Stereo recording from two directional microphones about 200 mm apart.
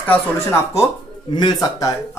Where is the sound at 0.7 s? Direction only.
20° left (ahead or behind).